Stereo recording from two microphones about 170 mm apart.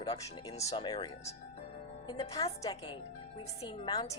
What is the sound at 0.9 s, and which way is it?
Speech, 25° left (ahead or behind).